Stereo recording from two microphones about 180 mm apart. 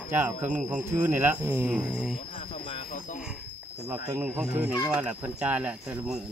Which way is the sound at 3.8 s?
15° right (ahead or behind).